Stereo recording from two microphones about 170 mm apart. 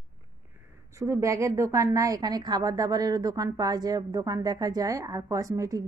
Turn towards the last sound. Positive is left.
turn(degrees=-20)  # may be behind; listen again after turning